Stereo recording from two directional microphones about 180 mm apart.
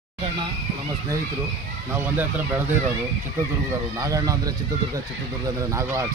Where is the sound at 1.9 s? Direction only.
10° right (ahead or behind).